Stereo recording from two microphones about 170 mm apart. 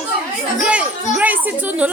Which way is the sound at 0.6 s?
5° right (ahead or behind).